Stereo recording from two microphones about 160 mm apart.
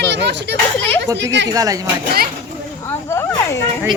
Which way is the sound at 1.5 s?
20° right (ahead or behind).